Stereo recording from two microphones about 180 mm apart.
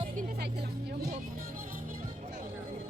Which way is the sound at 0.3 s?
65° right (ahead or behind).